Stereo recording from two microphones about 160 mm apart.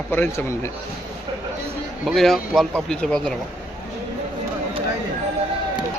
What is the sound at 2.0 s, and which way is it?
Speech, centre (ahead or behind).